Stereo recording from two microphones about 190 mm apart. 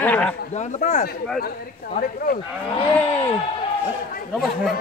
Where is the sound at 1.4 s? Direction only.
50° left (ahead or behind).